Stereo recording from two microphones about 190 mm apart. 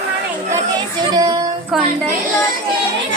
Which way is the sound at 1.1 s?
20° right (ahead or behind).